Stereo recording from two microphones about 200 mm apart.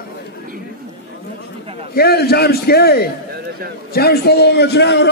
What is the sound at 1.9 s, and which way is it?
A man's voice, 50° left (ahead or behind).